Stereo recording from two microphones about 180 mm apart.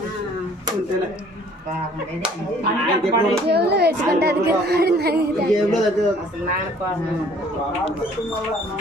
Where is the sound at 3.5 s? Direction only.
65° right (ahead or behind).